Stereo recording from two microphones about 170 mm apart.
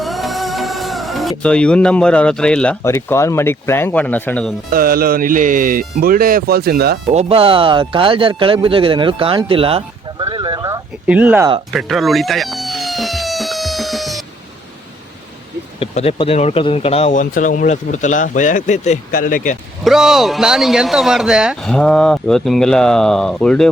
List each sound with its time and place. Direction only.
0.0 s music: centre (ahead or behind)
2.8 s speech: 15° left (ahead or behind)
4.7 s speech: 60° right (ahead or behind)
7.1 s speech: 35° right (ahead or behind)
10.2 s a sound: 25° right (ahead or behind)
11.0 s speech: 10° right (ahead or behind)
11.7 s music: centre (ahead or behind)
15.8 s speech: 35° left (ahead or behind); by 19.5 s 55° left (ahead or behind)
19.8 s speech: centre (ahead or behind)